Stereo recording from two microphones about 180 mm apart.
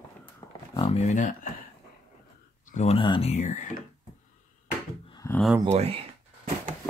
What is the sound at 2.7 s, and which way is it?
Speech, 35° left (ahead or behind).